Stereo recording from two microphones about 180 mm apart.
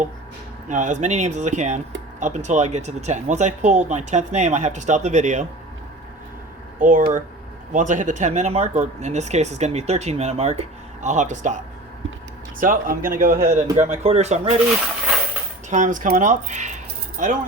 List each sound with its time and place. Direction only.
0.7 s speech: 45° right (ahead or behind)
6.7 s a man's voice: 50° right (ahead or behind)
12.5 s a man's voice: 50° right (ahead or behind)
15.7 s a man's voice: 45° right (ahead or behind)